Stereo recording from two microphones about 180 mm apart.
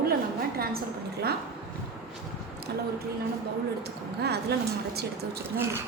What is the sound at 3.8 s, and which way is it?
Speech, 65° right (ahead or behind).